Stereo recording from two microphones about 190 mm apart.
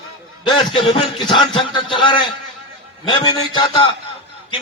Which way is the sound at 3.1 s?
25° left (ahead or behind).